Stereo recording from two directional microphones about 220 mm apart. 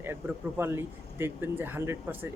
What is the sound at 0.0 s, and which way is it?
Speech, 10° right (ahead or behind).